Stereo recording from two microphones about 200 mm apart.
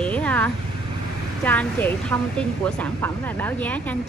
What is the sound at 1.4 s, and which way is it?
A woman's voice, 10° left (ahead or behind).